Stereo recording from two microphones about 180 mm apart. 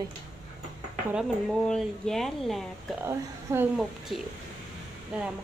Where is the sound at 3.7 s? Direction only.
Centre (ahead or behind).